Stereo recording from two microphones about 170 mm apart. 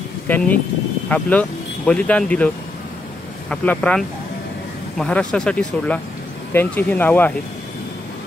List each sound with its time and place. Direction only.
0.3 s speech: 10° left (ahead or behind)